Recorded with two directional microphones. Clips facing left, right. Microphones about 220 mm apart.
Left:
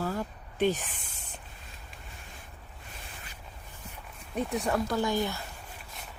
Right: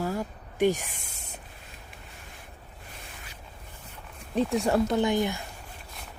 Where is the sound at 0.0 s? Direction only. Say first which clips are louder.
Right 2 dB; 10° right (ahead or behind).